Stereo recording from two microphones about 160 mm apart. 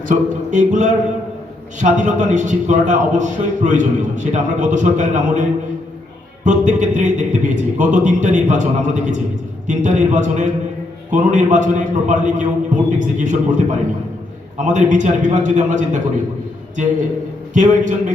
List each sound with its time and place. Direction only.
0.1 s a man's voice: 50° right (ahead or behind)
17.5 s a man's voice: 50° right (ahead or behind)